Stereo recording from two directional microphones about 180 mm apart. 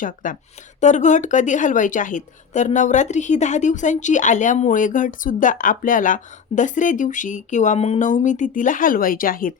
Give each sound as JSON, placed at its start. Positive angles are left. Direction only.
{"t": 0.0, "sound": "speech", "side_deg": 45}